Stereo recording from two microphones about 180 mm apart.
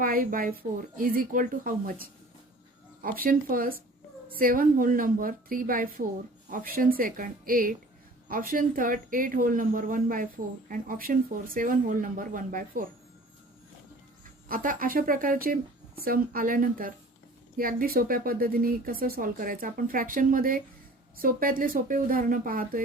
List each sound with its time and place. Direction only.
0.0 s speech: 50° right (ahead or behind)
14.4 s speech: 50° right (ahead or behind)